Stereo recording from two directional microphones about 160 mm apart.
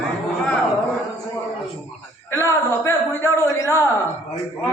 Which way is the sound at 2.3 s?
20° left (ahead or behind).